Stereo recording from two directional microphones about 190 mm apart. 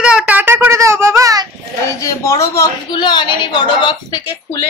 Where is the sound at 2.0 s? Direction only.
15° left (ahead or behind).